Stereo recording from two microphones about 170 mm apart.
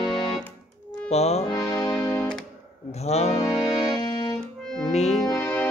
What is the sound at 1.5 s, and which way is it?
Music, 20° left (ahead or behind).